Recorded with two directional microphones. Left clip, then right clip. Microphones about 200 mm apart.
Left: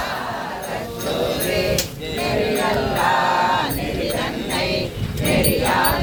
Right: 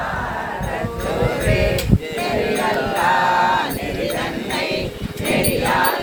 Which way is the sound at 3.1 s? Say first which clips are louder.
Right 2 dB; 40° right (ahead or behind).